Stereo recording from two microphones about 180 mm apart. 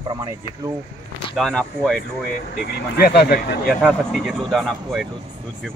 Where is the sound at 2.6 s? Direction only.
60° left (ahead or behind).